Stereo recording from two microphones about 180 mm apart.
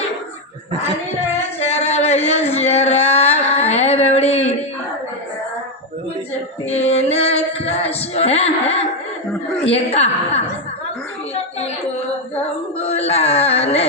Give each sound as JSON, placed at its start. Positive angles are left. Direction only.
{"t": 1.5, "sound": "a sound", "side_deg": 35}
{"t": 6.7, "sound": "music", "side_deg": 35}
{"t": 9.6, "sound": "a woman's voice", "side_deg": 35}
{"t": 12.9, "sound": "carnatic music", "side_deg": 35}